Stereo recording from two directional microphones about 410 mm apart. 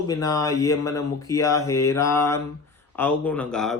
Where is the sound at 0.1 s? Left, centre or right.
Centre.